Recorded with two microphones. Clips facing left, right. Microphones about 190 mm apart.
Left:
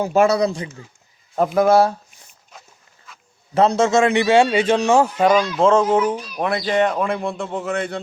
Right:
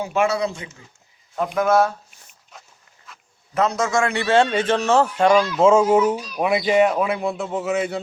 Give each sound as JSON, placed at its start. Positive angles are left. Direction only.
{"t": 0.0, "sound": "speech", "side_deg": 40}
{"t": 3.5, "sound": "a man's voice", "side_deg": 30}
{"t": 5.5, "sound": "speech", "side_deg": -10}